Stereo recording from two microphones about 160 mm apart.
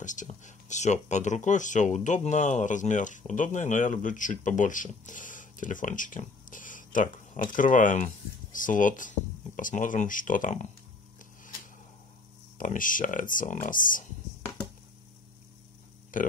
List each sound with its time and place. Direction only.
0.0 s speech: 50° left (ahead or behind)
12.5 s speech: 55° left (ahead or behind)
16.1 s speech: 55° left (ahead or behind)